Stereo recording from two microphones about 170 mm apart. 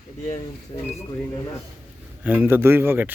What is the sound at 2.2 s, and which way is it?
Speech, 10° right (ahead or behind).